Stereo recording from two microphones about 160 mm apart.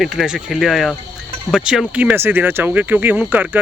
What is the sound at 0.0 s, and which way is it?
Speech, centre (ahead or behind).